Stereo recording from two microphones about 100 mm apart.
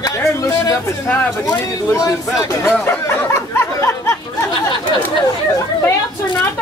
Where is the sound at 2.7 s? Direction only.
15° left (ahead or behind).